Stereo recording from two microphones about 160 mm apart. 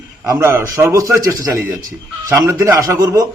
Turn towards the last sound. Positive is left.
turn(degrees=-20)  # may be behind; listen again after turning